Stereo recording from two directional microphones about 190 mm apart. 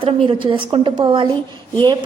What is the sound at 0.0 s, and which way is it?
A woman's voice, 30° right (ahead or behind).